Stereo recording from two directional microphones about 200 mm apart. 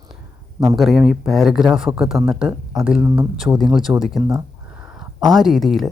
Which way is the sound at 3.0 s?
15° right (ahead or behind).